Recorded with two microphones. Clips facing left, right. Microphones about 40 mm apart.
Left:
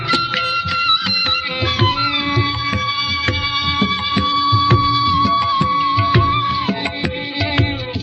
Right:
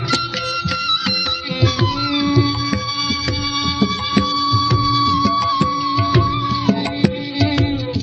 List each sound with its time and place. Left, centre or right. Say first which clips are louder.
1.8 s music: left 1 dB; left
4.2 s music: left 2 dB; left